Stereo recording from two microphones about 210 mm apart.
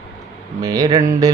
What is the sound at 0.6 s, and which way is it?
Mantra, 20° right (ahead or behind).